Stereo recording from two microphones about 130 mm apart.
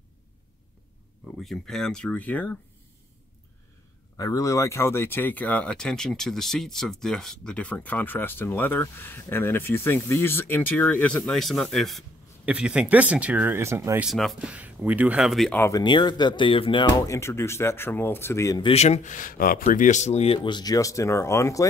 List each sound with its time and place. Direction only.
1.4 s speech: centre (ahead or behind)
4.2 s speech: 25° left (ahead or behind); by 12.0 s centre (ahead or behind)
12.4 s speech: 10° right (ahead or behind)
14.0 s speech: centre (ahead or behind)
14.5 s speech: 10° right (ahead or behind)
15.7 s speech: 35° left (ahead or behind)
17.0 s speech: 25° left (ahead or behind)
18.6 s speech: 55° left (ahead or behind)
20.3 s speech: 35° left (ahead or behind)